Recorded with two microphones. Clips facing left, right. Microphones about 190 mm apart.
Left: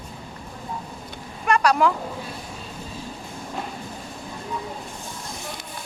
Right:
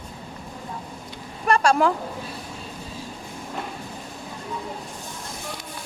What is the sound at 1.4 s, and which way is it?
Vehicle, 30° right (ahead or behind).